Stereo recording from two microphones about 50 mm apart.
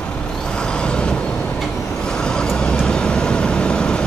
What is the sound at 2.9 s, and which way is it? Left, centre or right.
Vehicle, centre.